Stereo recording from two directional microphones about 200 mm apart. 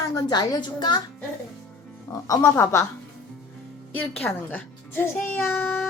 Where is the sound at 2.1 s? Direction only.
15° left (ahead or behind).